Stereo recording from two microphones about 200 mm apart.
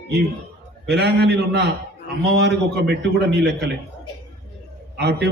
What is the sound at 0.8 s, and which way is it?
A man's voice, 55° right (ahead or behind).